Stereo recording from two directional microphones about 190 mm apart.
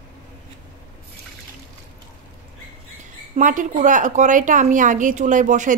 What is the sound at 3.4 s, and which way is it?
A woman's voice, 45° right (ahead or behind).